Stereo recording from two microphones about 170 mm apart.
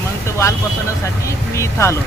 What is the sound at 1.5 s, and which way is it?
Speech, 15° left (ahead or behind).